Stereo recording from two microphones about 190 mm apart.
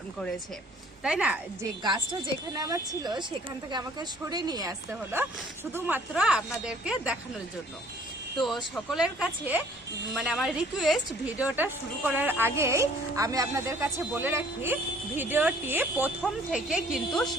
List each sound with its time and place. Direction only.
1.0 s speech: 5° right (ahead or behind)
1.8 s a woman's voice: 25° right (ahead or behind)
5.7 s speech: 10° right (ahead or behind)
8.7 s speech: centre (ahead or behind)